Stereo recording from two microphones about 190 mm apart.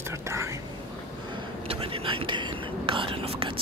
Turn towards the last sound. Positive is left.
turn(degrees=-30)  # may be behind; listen again after turning